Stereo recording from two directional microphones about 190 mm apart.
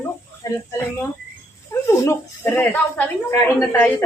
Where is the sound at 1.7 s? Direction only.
15° left (ahead or behind).